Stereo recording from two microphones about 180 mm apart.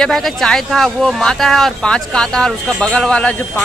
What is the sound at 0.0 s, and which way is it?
Speech, centre (ahead or behind).